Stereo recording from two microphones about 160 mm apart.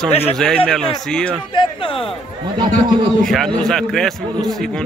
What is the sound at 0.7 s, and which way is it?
Speech, 5° left (ahead or behind).